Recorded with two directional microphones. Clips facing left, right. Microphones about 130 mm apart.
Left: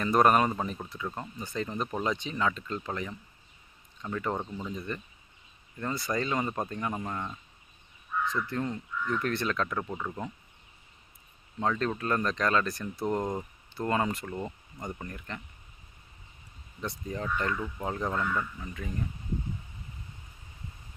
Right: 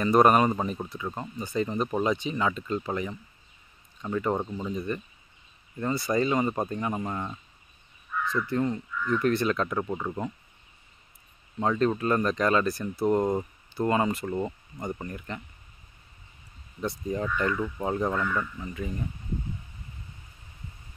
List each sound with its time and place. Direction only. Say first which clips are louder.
0.0 s speech: right 3 dB; 5° right (ahead or behind)
11.6 s speech: right 5 dB; 10° right (ahead or behind)
17.1 s speech: right 3 dB; 10° right (ahead or behind)